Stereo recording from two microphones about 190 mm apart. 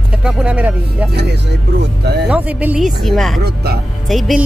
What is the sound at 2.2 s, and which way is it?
Speech, 5° right (ahead or behind).